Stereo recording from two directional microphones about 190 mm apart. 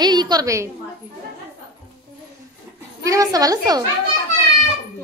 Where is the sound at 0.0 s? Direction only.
20° right (ahead or behind).